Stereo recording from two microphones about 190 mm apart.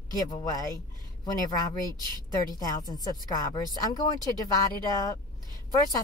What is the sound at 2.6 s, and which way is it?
Speech, 20° left (ahead or behind).